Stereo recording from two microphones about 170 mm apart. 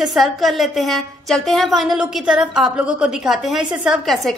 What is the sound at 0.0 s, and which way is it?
A woman's voice, centre (ahead or behind).